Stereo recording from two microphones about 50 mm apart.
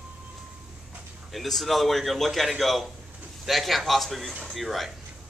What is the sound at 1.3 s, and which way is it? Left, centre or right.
A man's voice, centre.